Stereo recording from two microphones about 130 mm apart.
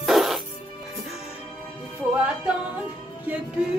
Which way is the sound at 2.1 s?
10° right (ahead or behind).